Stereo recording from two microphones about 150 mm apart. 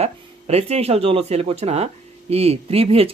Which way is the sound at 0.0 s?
45° right (ahead or behind).